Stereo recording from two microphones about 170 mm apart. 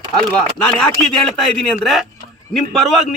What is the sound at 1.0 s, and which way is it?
A man's voice, centre (ahead or behind).